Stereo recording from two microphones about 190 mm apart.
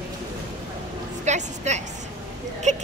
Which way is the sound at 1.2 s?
40° right (ahead or behind).